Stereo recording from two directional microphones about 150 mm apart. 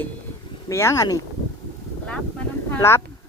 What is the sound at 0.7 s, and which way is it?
Speech, 20° left (ahead or behind).